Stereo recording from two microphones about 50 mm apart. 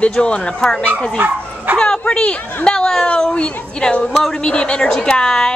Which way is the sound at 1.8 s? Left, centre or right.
Centre.